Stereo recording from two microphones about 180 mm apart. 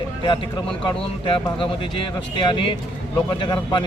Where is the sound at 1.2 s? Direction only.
30° left (ahead or behind).